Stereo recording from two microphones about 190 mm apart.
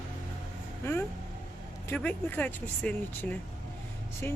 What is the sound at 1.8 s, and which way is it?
Speech, 10° left (ahead or behind).